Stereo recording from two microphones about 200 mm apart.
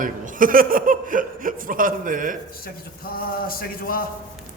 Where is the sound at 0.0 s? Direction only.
40° right (ahead or behind).